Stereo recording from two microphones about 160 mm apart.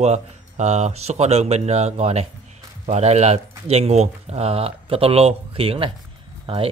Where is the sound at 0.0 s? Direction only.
45° right (ahead or behind).